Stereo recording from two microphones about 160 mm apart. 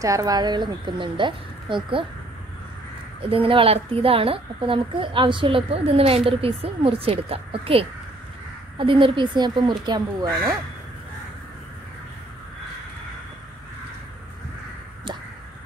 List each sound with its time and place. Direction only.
0.0 s speech: 20° right (ahead or behind)
3.2 s a woman's voice: 35° right (ahead or behind)